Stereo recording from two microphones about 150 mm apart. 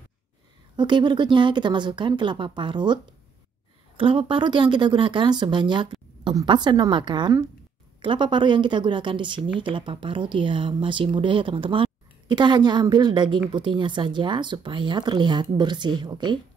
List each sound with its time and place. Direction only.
0.7 s a woman's voice: 30° right (ahead or behind)